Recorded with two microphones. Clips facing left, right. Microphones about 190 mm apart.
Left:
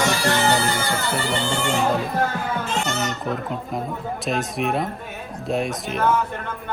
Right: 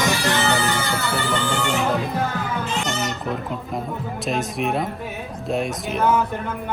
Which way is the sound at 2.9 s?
Centre (ahead or behind).